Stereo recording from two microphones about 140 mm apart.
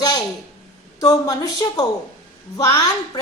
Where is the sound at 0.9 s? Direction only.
25° left (ahead or behind).